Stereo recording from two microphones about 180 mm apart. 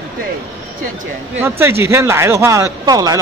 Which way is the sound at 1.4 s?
15° right (ahead or behind).